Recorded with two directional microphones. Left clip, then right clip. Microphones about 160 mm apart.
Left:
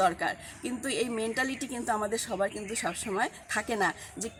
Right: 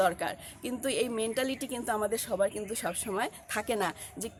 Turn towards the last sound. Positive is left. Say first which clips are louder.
# left 3 dB
turn(degrees=-40)  # may be behind; listen again after turning